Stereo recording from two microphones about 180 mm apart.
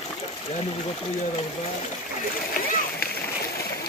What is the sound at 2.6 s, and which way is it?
Splash, 55° left (ahead or behind).